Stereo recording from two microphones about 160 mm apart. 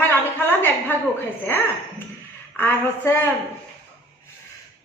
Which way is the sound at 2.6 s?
15° left (ahead or behind).